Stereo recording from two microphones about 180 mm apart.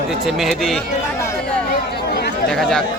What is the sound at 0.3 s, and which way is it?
Speech, centre (ahead or behind).